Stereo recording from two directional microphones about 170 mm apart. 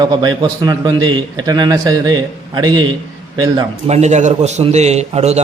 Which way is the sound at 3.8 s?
40° right (ahead or behind).